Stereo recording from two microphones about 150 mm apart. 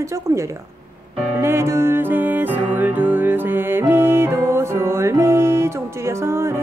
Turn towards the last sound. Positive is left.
turn(degrees=-15)  # may be behind; listen again after turning